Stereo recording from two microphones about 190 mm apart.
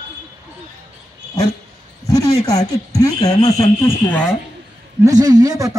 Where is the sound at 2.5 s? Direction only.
20° left (ahead or behind).